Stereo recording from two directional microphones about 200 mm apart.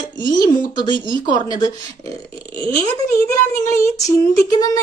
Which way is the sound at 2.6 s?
15° left (ahead or behind).